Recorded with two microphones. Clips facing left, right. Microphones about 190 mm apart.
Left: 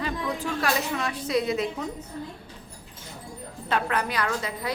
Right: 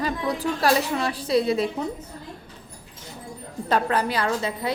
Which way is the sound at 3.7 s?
30° right (ahead or behind).